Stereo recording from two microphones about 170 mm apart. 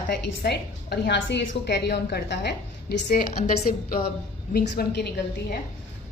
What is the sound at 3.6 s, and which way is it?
A woman's voice, 60° left (ahead or behind).